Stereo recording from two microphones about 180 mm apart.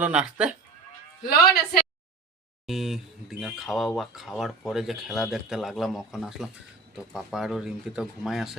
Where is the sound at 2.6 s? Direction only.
Centre (ahead or behind).